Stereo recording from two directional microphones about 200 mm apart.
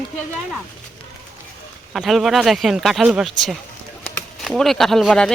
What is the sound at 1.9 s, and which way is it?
Speech, centre (ahead or behind).